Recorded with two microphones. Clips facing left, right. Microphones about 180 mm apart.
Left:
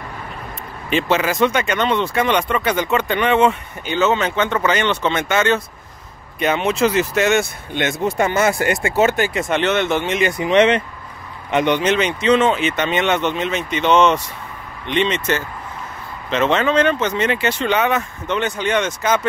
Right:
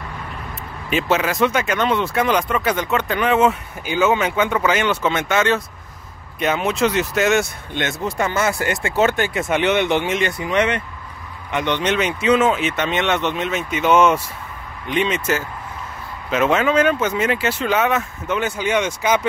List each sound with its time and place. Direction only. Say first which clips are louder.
0.8 s speech: left 1 dB; 5° right (ahead or behind)
7.7 s speech: left 4 dB; 15° left (ahead or behind); by 10.1 s 15° right (ahead or behind)
10.3 s speech: left 5 dB; 20° left (ahead or behind)
11.8 s speech: left 2 dB; centre (ahead or behind)